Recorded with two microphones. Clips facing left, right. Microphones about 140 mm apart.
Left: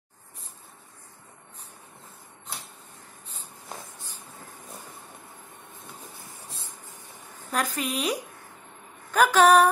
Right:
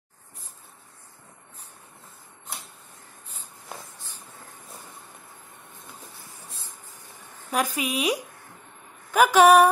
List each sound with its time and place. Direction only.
7.5 s a woman's voice: 10° right (ahead or behind)